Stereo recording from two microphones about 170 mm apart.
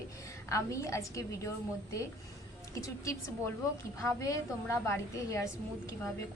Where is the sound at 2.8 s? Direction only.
20° left (ahead or behind).